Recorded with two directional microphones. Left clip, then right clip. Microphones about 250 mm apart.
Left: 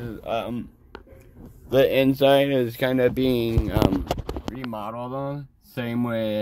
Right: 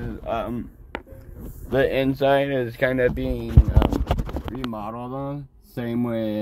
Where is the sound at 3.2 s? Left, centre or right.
Left.